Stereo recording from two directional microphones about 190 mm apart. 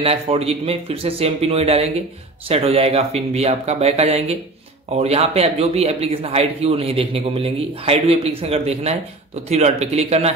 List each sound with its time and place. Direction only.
0.0 s speech: 30° right (ahead or behind)